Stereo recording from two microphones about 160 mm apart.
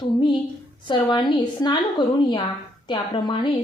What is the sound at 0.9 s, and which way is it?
A woman's voice, 30° left (ahead or behind).